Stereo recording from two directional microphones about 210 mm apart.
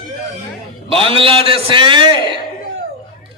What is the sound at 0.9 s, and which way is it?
A man's voice, 25° right (ahead or behind).